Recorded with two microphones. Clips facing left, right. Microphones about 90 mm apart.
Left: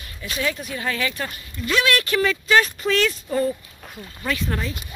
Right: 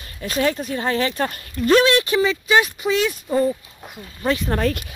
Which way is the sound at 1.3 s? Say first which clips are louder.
Right 8 dB; 45° right (ahead or behind).